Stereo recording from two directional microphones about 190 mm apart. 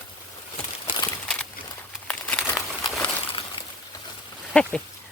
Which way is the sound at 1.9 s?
5° left (ahead or behind).